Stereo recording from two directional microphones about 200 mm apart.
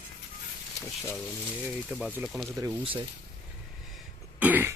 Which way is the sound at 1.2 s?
5° right (ahead or behind).